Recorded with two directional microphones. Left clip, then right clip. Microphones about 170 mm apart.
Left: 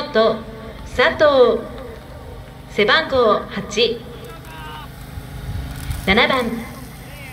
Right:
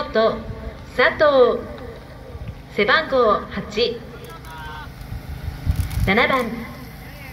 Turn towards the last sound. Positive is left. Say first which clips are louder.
# left 2 dB
turn(degrees=5)  # may be behind; listen again after turning